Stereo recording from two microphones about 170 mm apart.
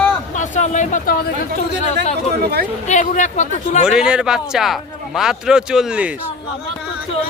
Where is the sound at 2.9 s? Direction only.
45° left (ahead or behind).